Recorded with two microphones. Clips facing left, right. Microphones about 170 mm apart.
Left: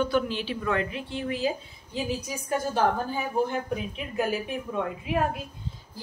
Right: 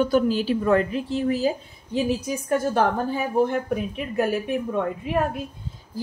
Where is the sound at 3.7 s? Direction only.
50° right (ahead or behind).